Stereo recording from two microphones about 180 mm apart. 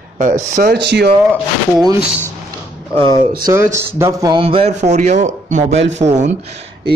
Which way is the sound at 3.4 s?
15° right (ahead or behind).